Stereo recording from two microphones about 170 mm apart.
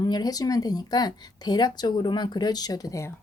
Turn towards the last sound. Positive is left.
turn(degrees=20)  # may be behind; listen again after turning